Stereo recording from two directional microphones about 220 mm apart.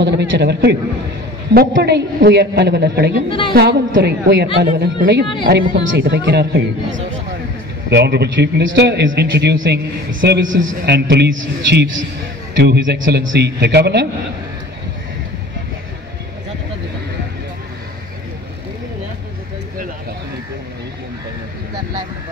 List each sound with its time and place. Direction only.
0.0 s a man's voice: 50° right (ahead or behind)
3.3 s a woman's voice: 25° left (ahead or behind)
3.5 s a man's voice: 50° right (ahead or behind)
12.6 s a man's voice: 50° right (ahead or behind)